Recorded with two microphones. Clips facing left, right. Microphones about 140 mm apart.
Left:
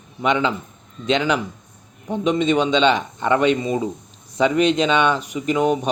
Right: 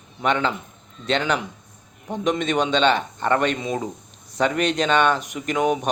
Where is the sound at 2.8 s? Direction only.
15° left (ahead or behind).